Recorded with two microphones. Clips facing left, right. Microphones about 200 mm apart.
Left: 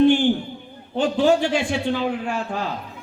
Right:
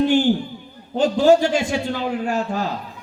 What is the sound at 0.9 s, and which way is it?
Speech, 40° right (ahead or behind).